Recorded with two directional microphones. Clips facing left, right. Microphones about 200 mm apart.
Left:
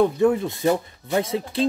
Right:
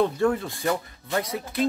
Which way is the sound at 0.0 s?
20° left (ahead or behind).